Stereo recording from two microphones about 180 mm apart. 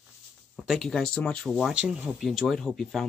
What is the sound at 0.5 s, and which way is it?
Speech, centre (ahead or behind).